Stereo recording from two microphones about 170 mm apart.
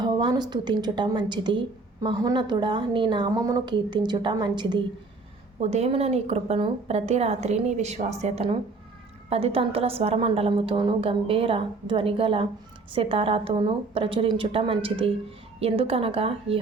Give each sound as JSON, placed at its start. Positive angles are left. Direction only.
{"t": 0.0, "sound": "a woman's voice", "side_deg": -25}
{"t": 5.5, "sound": "a woman's voice", "side_deg": -40}